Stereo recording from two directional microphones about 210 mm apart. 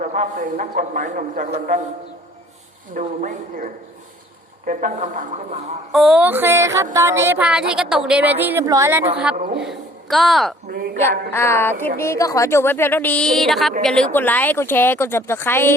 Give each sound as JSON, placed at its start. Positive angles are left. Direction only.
{"t": 0.0, "sound": "a man's voice", "side_deg": -35}
{"t": 2.9, "sound": "a man's voice", "side_deg": -35}
{"t": 5.9, "sound": "a woman's voice", "side_deg": 0}
{"t": 9.3, "sound": "a man's voice", "side_deg": -40}
{"t": 9.6, "sound": "a woman's voice", "side_deg": 0}
{"t": 10.7, "sound": "a woman's voice", "side_deg": -45}
{"t": 11.0, "sound": "a woman's voice", "side_deg": 10}